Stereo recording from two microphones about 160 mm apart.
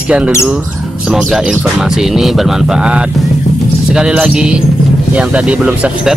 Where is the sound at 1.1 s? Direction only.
5° right (ahead or behind).